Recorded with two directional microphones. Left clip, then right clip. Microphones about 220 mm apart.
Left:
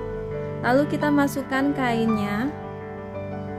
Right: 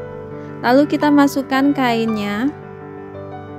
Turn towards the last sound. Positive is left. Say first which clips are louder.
# right 4 dB
turn(degrees=-35)  # may be behind; listen again after turning